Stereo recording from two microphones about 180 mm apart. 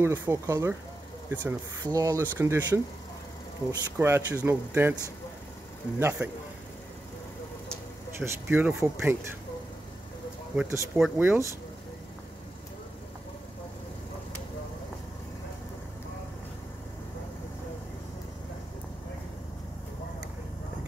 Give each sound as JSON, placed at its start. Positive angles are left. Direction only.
{"t": 0.0, "sound": "speech", "side_deg": -15}
{"t": 4.0, "sound": "speech", "side_deg": -15}
{"t": 8.2, "sound": "speech", "side_deg": -10}
{"t": 10.5, "sound": "speech", "side_deg": -10}